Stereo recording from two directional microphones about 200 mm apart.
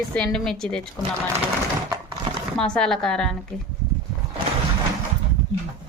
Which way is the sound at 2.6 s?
5° left (ahead or behind).